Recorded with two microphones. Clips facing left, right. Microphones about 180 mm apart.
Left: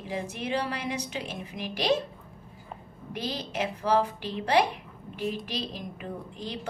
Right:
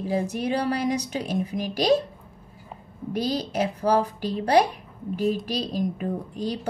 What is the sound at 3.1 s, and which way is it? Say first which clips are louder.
A woman's voice: right 7 dB; 40° right (ahead or behind).